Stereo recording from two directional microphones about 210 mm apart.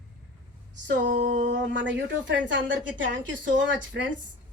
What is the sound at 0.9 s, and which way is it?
Speech, 60° right (ahead or behind).